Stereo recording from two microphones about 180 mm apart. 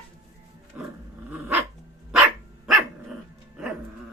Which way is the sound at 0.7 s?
10° right (ahead or behind).